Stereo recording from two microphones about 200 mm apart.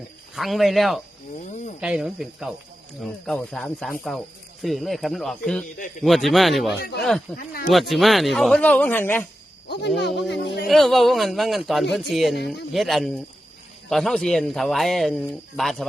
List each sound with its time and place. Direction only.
0.3 s speech: centre (ahead or behind)
1.5 s cricket: 40° left (ahead or behind)
1.8 s speech: 5° right (ahead or behind)
10.2 s speech: 60° left (ahead or behind)
10.7 s speech: centre (ahead or behind)